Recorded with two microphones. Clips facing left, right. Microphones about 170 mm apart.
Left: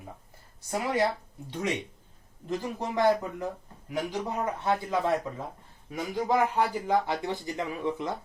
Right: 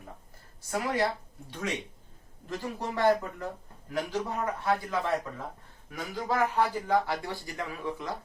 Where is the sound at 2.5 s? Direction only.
15° left (ahead or behind).